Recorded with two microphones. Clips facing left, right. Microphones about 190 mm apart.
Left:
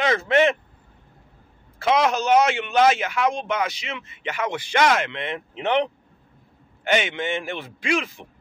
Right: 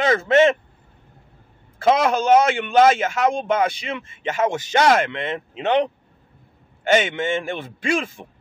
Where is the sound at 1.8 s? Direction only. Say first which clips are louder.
Right 3 dB; 50° right (ahead or behind).